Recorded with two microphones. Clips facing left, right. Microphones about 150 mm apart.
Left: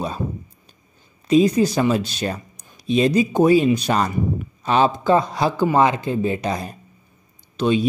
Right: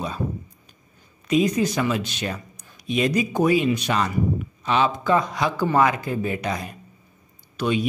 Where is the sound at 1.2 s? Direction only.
30° left (ahead or behind).